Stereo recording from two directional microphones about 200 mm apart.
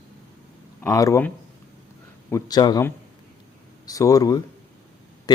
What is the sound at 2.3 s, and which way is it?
Speech, 20° left (ahead or behind).